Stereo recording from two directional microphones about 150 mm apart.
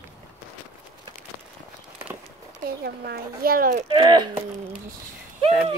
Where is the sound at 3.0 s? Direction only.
85° right.